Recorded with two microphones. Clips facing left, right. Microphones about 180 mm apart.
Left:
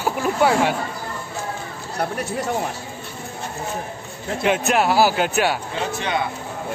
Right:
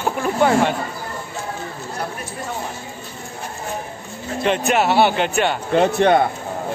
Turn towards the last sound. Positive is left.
turn(degrees=-55)  # may be behind; listen again after turning